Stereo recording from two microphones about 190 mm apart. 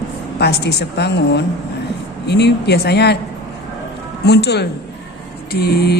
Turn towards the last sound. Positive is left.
turn(degrees=55)  # may be behind; listen again after turning